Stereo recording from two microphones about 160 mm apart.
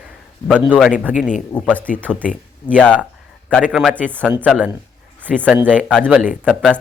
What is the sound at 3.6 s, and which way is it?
Speech, 5° right (ahead or behind).